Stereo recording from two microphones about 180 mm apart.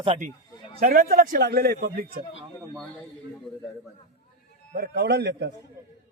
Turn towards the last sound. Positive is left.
turn(degrees=-70)  # may be behind; listen again after turning